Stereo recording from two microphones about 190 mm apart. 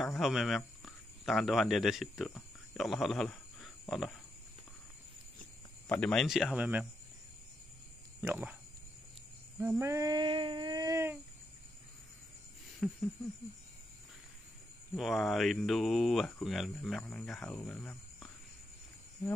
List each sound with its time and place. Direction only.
0.0 s speech: centre (ahead or behind)
5.9 s speech: 5° left (ahead or behind)
8.2 s speech: 10° right (ahead or behind)
9.6 s a sound: 10° right (ahead or behind)
12.8 s a sound: centre (ahead or behind)
15.0 s speech: centre (ahead or behind)